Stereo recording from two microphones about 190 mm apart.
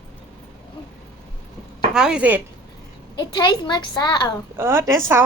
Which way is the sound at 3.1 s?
20° left (ahead or behind).